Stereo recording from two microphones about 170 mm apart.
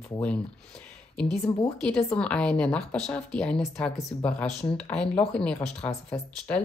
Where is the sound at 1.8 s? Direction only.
5° left (ahead or behind).